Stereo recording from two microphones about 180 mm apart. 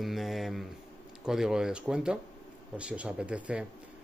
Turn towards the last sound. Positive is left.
turn(degrees=-5)  # may be behind; listen again after turning